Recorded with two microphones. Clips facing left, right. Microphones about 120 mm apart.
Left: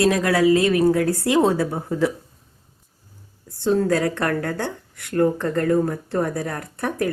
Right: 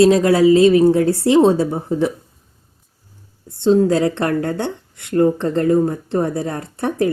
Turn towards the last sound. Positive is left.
turn(degrees=-25)  # may be behind; listen again after turning